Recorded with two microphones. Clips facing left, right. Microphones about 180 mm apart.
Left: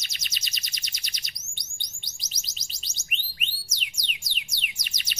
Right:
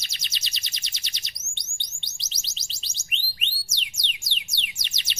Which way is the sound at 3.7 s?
25° right (ahead or behind).